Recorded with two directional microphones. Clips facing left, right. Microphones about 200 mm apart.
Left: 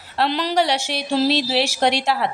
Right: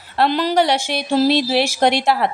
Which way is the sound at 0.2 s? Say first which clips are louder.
Right 3 dB; 50° right (ahead or behind).